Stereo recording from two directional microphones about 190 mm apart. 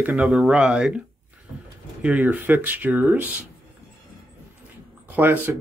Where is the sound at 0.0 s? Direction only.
Centre (ahead or behind).